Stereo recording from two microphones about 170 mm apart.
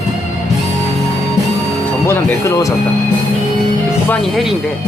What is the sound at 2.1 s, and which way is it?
Speech, 20° left (ahead or behind).